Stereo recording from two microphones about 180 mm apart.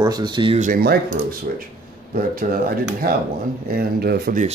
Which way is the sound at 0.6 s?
50° right (ahead or behind).